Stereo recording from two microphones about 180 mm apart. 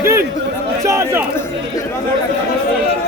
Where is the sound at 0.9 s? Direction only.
15° right (ahead or behind).